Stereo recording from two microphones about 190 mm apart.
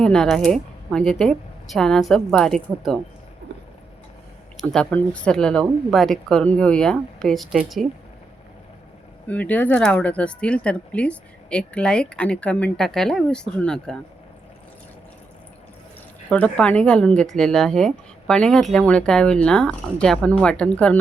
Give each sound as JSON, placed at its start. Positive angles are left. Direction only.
{"t": 0.0, "sound": "speech", "side_deg": 0}
{"t": 3.5, "sound": "a sound", "side_deg": -65}
{"t": 4.5, "sound": "speech", "side_deg": 5}
{"t": 9.2, "sound": "speech", "side_deg": 10}
{"t": 16.3, "sound": "speech", "side_deg": 5}